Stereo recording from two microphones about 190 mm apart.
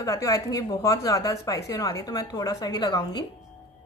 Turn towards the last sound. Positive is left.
turn(degrees=20)  # may be behind; listen again after turning